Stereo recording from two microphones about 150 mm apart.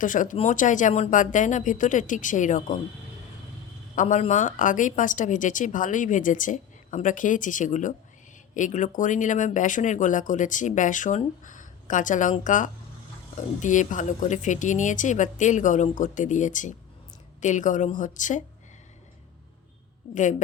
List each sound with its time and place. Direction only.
0.0 s speech: 60° left (ahead or behind)
3.9 s speech: 55° left (ahead or behind)